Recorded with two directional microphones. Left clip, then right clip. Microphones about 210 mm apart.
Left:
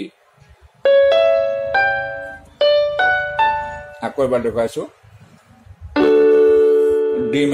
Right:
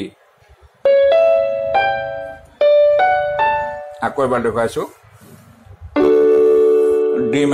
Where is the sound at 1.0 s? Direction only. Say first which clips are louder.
Right 1 dB; 30° left (ahead or behind).